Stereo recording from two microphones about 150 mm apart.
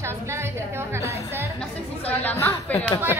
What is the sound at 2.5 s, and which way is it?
Speech, 25° left (ahead or behind).